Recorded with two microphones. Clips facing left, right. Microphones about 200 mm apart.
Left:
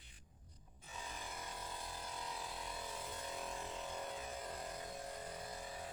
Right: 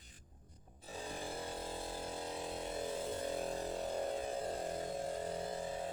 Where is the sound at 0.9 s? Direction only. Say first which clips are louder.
Right 7 dB; 30° right (ahead or behind).